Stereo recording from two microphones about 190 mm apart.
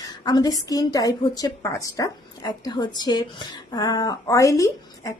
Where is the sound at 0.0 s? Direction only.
20° left (ahead or behind).